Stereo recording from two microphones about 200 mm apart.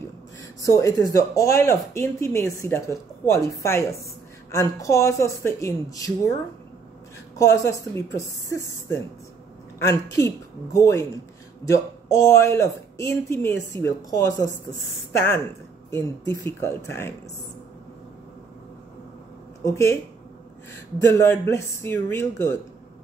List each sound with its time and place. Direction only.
0.6 s speech: 15° left (ahead or behind)
7.3 s speech: 15° left (ahead or behind)
9.8 s speech: 15° left (ahead or behind)
19.6 s speech: 15° left (ahead or behind)
21.0 s speech: 15° left (ahead or behind)